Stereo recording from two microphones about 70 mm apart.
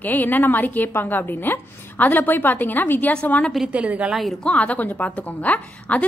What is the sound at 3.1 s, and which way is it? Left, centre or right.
Speech, centre.